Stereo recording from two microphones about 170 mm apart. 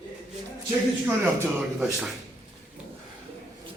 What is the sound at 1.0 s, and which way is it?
Speech, 10° right (ahead or behind).